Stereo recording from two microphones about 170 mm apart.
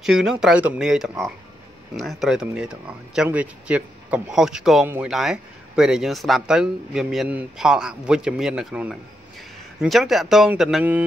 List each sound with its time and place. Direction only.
0.0 s a man's voice: 5° right (ahead or behind)